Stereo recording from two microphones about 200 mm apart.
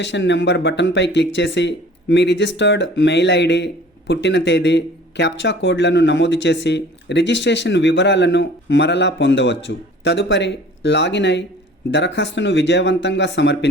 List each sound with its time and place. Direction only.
0.0 s speech: 60° left (ahead or behind)